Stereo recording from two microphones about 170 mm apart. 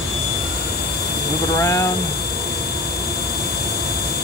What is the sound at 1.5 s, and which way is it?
Speech, 20° left (ahead or behind).